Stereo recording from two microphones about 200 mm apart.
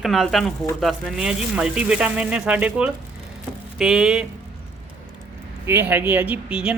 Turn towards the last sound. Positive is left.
turn(degrees=-5)  # may be behind; listen again after turning